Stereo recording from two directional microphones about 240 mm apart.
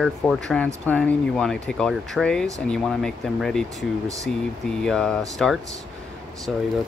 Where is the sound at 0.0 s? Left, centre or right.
Centre.